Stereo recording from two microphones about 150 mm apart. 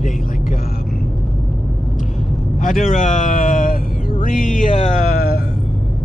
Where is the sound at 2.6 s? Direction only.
60° left (ahead or behind).